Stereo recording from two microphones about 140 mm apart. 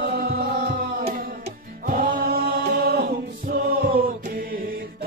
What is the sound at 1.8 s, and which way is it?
Chant, 90° right.